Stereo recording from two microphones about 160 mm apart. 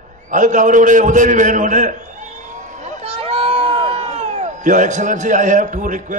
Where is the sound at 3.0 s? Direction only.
35° right (ahead or behind); by 6.2 s 55° right (ahead or behind).